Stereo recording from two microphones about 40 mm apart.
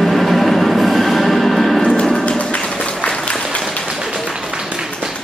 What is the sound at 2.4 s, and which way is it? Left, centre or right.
Music, left.